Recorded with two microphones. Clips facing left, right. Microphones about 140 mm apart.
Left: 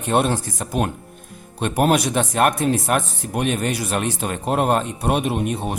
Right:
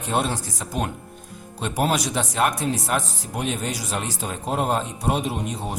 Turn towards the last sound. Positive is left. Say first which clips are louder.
# left 4 dB
turn(degrees=60)  # may be behind; listen again after turning